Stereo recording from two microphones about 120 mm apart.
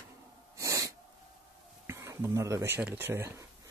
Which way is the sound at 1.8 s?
25° right (ahead or behind).